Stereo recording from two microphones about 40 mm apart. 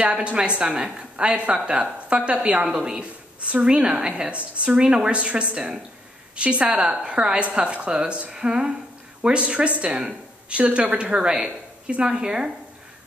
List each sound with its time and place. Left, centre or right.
0.0 s a woman's voice: right
3.3 s a woman's voice: right
5.1 s a woman's voice: right